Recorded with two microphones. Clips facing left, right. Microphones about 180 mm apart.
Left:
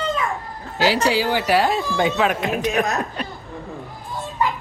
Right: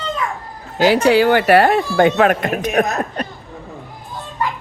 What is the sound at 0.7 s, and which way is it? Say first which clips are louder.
Speech: right 6 dB; 55° right (ahead or behind).